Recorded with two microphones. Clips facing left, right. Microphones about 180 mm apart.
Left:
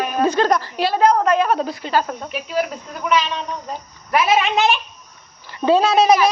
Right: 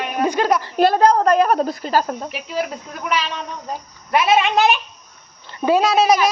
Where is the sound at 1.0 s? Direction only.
35° right (ahead or behind).